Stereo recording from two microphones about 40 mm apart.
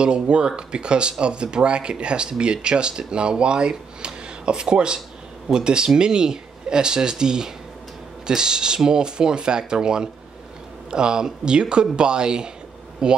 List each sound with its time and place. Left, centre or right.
0.0 s speech: right